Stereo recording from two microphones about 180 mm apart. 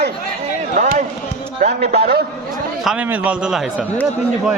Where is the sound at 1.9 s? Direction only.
60° right (ahead or behind).